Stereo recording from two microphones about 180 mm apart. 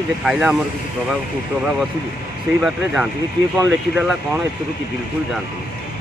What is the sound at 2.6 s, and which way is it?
Speech, 5° right (ahead or behind).